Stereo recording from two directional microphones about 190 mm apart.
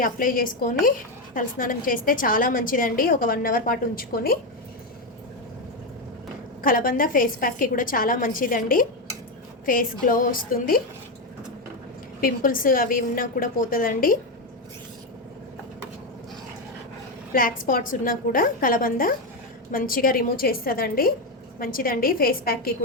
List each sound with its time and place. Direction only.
0.0 s a woman's voice: 45° left (ahead or behind)
6.6 s a woman's voice: 45° left (ahead or behind)
12.2 s a woman's voice: 50° left (ahead or behind)
17.3 s a woman's voice: 50° left (ahead or behind)